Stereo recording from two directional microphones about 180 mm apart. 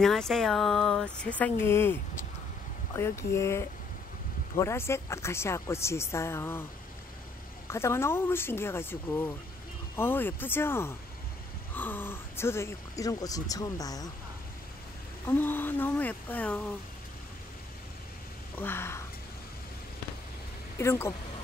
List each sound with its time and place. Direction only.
0.0 s speech: centre (ahead or behind)
3.0 s speech: 15° left (ahead or behind)
7.7 s speech: 15° left (ahead or behind)
15.2 s speech: 10° left (ahead or behind)
18.6 s speech: 15° left (ahead or behind)
20.7 s speech: 15° left (ahead or behind)